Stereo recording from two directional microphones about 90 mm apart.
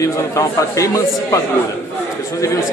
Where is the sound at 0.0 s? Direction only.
35° left (ahead or behind).